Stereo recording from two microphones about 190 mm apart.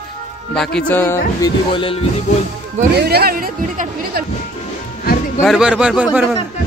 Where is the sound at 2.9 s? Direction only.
55° right (ahead or behind).